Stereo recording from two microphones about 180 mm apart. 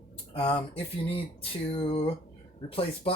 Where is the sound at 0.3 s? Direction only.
30° left (ahead or behind).